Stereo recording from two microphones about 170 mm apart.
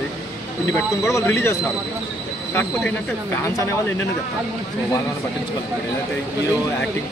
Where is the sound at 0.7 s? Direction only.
15° left (ahead or behind).